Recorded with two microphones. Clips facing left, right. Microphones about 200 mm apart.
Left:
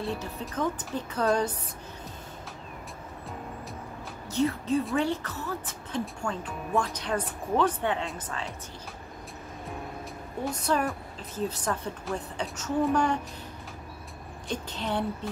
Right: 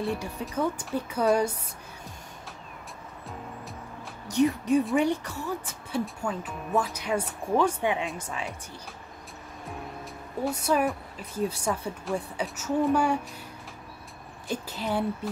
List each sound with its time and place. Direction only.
0.0 s speech: 10° right (ahead or behind)
4.3 s speech: 15° right (ahead or behind)
10.4 s speech: 10° right (ahead or behind)
14.5 s speech: 5° right (ahead or behind)